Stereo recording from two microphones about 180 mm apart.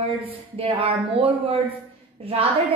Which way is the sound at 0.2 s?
30° right (ahead or behind).